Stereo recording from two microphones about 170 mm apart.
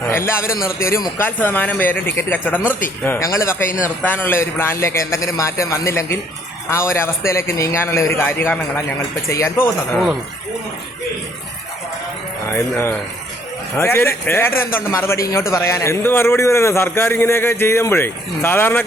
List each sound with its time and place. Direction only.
0.1 s a man's voice: 15° left (ahead or behind)
9.9 s speech: centre (ahead or behind)
12.5 s a man's voice: 15° left (ahead or behind)